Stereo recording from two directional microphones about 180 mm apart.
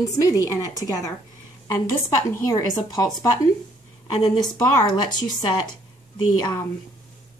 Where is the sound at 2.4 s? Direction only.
20° left (ahead or behind).